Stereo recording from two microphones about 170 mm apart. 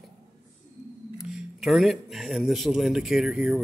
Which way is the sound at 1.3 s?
Centre (ahead or behind).